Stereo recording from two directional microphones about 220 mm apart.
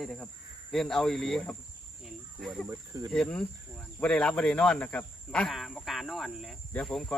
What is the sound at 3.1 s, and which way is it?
Speech, 5° left (ahead or behind).